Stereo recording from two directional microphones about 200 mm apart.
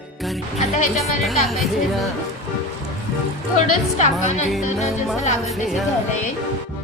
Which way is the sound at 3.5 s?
35° left (ahead or behind).